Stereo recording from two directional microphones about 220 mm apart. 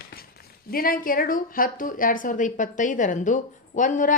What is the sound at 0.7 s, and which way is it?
A woman's voice, 40° left (ahead or behind).